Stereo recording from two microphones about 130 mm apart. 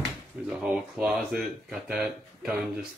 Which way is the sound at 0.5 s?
5° right (ahead or behind).